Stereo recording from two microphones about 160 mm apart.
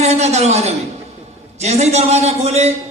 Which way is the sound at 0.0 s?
45° right (ahead or behind).